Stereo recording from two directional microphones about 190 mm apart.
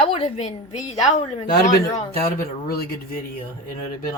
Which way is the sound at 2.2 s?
55° left (ahead or behind).